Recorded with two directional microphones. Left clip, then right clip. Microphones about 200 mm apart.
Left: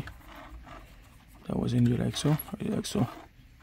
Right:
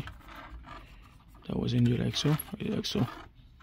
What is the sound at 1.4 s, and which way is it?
Speech, 10° left (ahead or behind).